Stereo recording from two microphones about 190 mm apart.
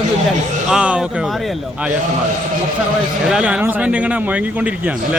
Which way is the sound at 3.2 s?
5° right (ahead or behind).